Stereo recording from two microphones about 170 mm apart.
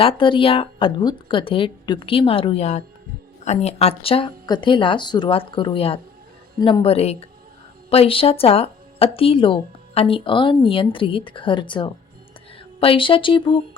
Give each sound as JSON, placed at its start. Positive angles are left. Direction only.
{"t": 0.0, "sound": "speech", "side_deg": 30}
{"t": 6.6, "sound": "speech", "side_deg": 20}
{"t": 6.8, "sound": "speech", "side_deg": 35}